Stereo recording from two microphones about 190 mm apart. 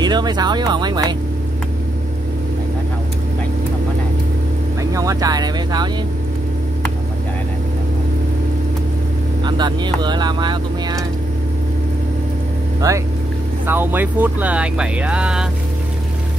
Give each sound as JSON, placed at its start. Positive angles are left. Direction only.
{"t": 0.0, "sound": "speech", "side_deg": -20}
{"t": 4.9, "sound": "speech", "side_deg": -20}
{"t": 9.4, "sound": "speech", "side_deg": -25}
{"t": 12.8, "sound": "speech", "side_deg": -20}